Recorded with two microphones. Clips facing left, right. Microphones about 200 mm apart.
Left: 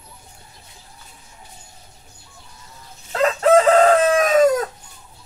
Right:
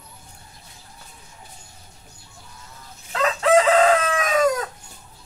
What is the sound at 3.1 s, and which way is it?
Chicken, 40° left (ahead or behind).